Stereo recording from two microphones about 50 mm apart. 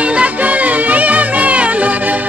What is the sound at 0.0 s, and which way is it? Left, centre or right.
Music, right.